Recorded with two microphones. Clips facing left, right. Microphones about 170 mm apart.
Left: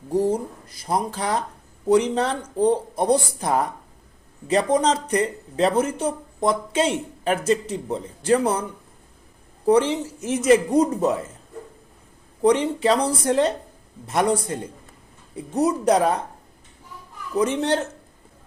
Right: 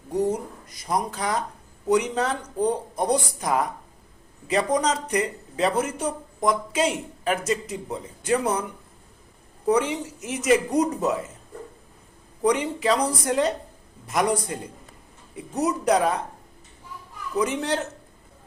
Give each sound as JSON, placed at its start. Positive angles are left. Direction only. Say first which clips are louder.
{"t": 0.1, "sound": "speech", "louder": "left 3 dB", "side_deg": 30}
{"t": 9.6, "sound": "speech", "louder": "left 4 dB", "side_deg": 30}
{"t": 12.4, "sound": "speech", "louder": "left 4 dB", "side_deg": 30}
{"t": 17.3, "sound": "speech", "louder": "left 4 dB", "side_deg": 30}